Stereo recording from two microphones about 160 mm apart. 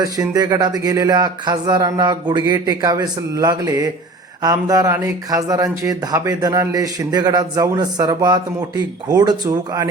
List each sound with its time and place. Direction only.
0.0 s speech: 20° right (ahead or behind)